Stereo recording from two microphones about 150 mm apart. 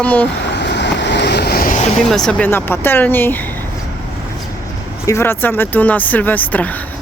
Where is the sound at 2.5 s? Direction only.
15° left (ahead or behind).